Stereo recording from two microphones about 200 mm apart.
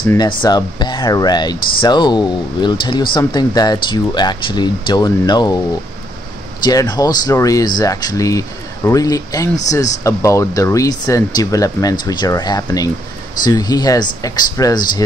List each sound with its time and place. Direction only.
0.2 s speech: 20° left (ahead or behind)
6.6 s speech: 20° left (ahead or behind)